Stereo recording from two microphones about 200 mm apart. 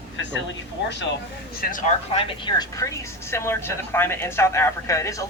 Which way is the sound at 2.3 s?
20° left (ahead or behind).